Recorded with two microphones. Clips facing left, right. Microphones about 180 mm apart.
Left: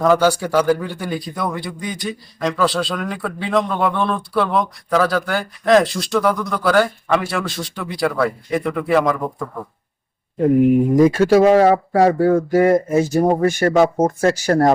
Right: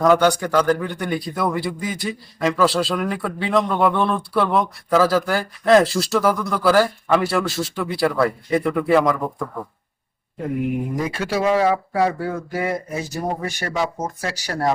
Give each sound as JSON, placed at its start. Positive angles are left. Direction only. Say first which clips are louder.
{"t": 0.0, "sound": "a man's voice", "louder": "left 1 dB", "side_deg": 5}
{"t": 10.9, "sound": "speech", "louder": "left 11 dB", "side_deg": 45}